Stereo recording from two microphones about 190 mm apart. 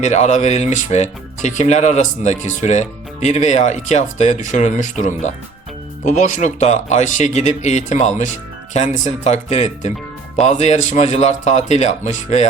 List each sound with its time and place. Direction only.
0.0 s speech: 35° left (ahead or behind)